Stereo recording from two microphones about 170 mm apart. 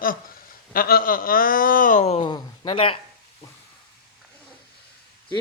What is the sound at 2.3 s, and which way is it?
Speech, 30° left (ahead or behind).